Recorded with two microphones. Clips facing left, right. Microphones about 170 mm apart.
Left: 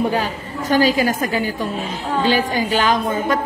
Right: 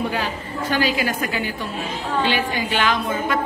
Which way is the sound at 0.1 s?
40° left (ahead or behind).